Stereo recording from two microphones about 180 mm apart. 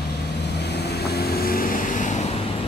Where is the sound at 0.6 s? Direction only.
65° left (ahead or behind); by 2.2 s 45° left (ahead or behind).